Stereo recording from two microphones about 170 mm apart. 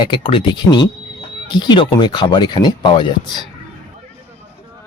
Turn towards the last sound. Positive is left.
turn(degrees=25)  # may be behind; listen again after turning